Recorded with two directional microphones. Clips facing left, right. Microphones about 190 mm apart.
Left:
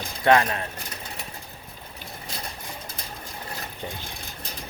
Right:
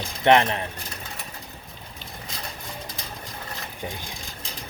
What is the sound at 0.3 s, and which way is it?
Speech, 20° right (ahead or behind).